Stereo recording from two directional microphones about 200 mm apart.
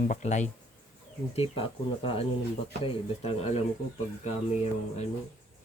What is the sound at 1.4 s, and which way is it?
Speech, 25° left (ahead or behind).